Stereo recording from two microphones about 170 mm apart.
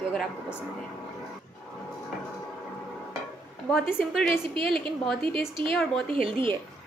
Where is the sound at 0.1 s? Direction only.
5° left (ahead or behind).